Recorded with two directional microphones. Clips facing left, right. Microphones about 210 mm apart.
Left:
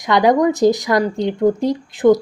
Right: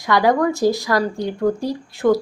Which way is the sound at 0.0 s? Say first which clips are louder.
Left 3 dB; 20° left (ahead or behind).